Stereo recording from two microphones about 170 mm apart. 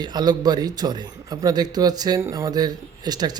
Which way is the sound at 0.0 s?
25° right (ahead or behind).